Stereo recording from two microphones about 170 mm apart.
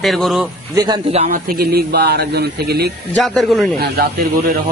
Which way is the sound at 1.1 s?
35° right (ahead or behind).